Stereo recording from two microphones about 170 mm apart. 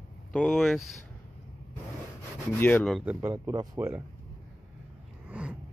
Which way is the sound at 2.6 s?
10° left (ahead or behind).